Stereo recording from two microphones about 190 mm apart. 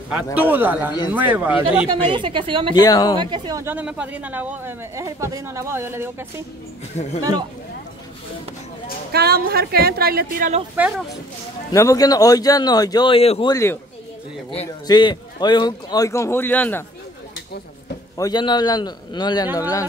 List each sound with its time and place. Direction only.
0.1 s speech: 10° right (ahead or behind)
1.9 s a woman's voice: 25° right (ahead or behind)
2.7 s a man's voice: 20° left (ahead or behind)
3.2 s speech: 25° right (ahead or behind)
7.0 s speech: 35° left (ahead or behind)
9.1 s a woman's voice: 55° right (ahead or behind)
11.7 s a man's voice: 15° left (ahead or behind)
13.5 s a man's voice: 15° left (ahead or behind)
14.9 s a man's voice: 25° left (ahead or behind)
18.1 s a man's voice: 20° left (ahead or behind)